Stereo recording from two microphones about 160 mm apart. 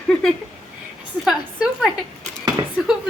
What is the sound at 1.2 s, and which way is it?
Speech, 5° right (ahead or behind).